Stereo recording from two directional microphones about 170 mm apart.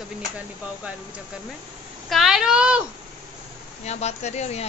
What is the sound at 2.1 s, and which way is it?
Speech, centre (ahead or behind).